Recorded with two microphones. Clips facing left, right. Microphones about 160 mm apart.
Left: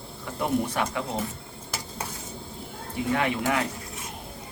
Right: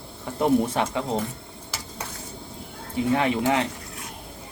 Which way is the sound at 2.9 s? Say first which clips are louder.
Right 4 dB; 25° right (ahead or behind).